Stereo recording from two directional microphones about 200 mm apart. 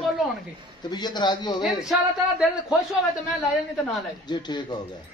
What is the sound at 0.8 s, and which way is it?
Speech, 20° left (ahead or behind).